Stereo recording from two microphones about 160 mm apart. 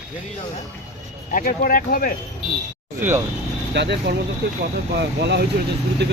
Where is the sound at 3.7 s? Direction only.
90° right.